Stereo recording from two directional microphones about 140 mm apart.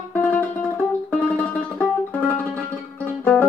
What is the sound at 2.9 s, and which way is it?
Music, 10° left (ahead or behind).